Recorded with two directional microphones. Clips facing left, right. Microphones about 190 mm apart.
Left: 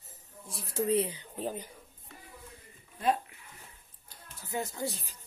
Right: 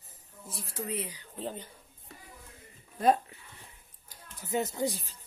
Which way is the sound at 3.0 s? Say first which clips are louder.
Right 4 dB; 35° right (ahead or behind).